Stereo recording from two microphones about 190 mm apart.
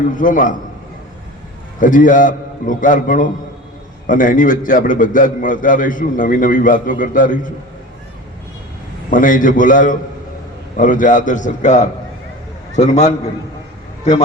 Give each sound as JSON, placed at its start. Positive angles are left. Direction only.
{"t": 0.1, "sound": "a man's voice", "side_deg": 45}
{"t": 1.8, "sound": "a man's voice", "side_deg": 45}
{"t": 9.0, "sound": "a man's voice", "side_deg": 45}